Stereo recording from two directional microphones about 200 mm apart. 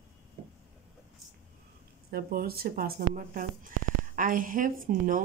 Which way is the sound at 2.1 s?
50° right (ahead or behind).